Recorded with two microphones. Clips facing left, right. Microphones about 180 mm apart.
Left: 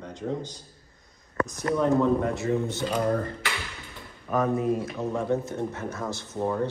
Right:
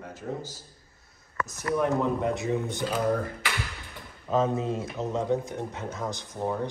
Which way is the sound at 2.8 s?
5° right (ahead or behind).